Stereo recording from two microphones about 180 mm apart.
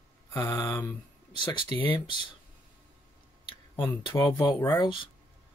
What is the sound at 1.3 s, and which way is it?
Speech, 25° left (ahead or behind).